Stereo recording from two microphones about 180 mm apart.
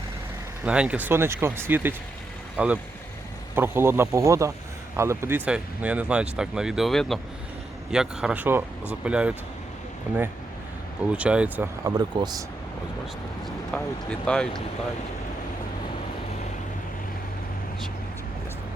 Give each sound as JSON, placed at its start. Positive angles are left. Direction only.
{"t": 0.6, "sound": "speech", "side_deg": -5}
{"t": 11.1, "sound": "speech", "side_deg": -5}
{"t": 13.4, "sound": "speech", "side_deg": 5}